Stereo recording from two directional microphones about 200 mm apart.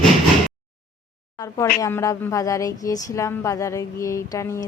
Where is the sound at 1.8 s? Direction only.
15° left (ahead or behind).